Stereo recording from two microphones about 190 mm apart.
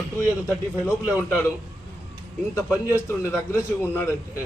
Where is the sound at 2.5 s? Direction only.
15° left (ahead or behind).